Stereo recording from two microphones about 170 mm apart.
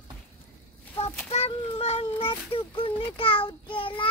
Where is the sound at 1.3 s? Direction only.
40° left (ahead or behind).